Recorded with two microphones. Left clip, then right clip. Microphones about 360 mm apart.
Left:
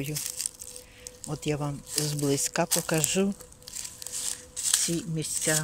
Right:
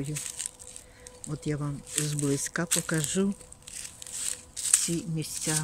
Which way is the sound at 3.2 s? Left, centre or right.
Left.